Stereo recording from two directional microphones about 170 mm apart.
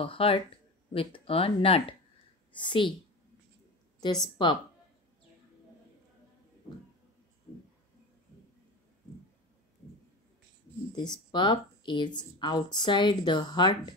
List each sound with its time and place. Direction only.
0.0 s speech: 30° left (ahead or behind)
4.0 s speech: 25° left (ahead or behind)
11.0 s speech: 25° left (ahead or behind)